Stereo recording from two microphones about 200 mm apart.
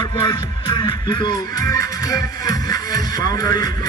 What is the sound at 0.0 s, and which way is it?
Music, 20° left (ahead or behind).